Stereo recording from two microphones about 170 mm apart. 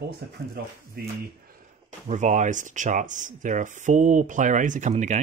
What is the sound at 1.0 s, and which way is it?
Speech, 60° right (ahead or behind).